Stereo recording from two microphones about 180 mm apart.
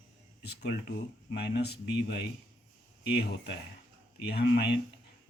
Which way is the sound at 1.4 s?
65° left (ahead or behind).